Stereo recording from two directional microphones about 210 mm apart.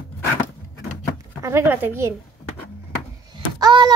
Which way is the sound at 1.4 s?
10° right (ahead or behind).